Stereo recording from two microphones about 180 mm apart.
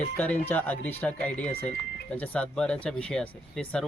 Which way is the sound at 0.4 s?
10° left (ahead or behind).